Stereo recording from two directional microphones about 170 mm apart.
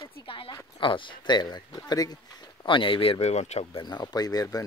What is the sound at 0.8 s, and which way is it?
Speech, 30° left (ahead or behind).